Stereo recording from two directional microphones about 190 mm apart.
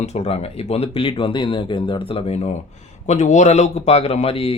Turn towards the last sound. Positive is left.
turn(degrees=30)  # may be behind; listen again after turning